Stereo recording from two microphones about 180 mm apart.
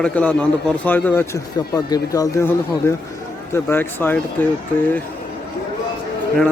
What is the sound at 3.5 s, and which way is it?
Speech, 10° left (ahead or behind).